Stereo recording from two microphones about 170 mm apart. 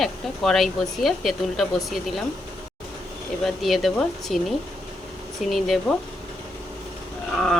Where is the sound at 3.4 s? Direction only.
Centre (ahead or behind).